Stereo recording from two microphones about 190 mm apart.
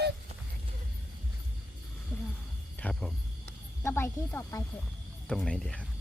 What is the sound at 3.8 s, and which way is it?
Snake, 15° left (ahead or behind).